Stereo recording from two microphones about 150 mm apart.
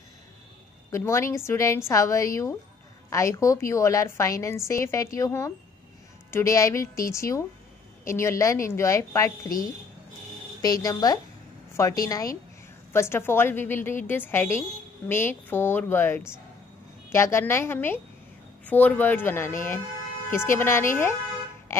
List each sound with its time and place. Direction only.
0.9 s a woman's voice: 20° left (ahead or behind)
10.6 s a woman's voice: 25° left (ahead or behind)